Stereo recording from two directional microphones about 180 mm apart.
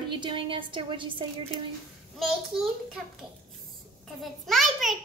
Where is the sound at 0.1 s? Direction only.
25° right (ahead or behind).